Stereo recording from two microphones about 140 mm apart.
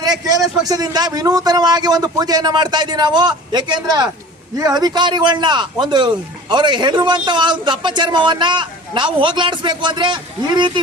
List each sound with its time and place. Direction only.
0.0 s a man's voice: 25° right (ahead or behind)